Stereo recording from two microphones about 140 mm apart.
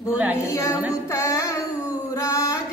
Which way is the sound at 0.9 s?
20° left (ahead or behind).